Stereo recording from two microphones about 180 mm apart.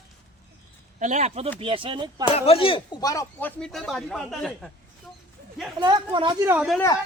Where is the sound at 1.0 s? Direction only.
40° right (ahead or behind).